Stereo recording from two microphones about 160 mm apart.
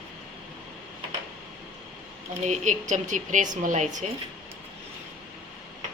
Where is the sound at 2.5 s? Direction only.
50° right (ahead or behind).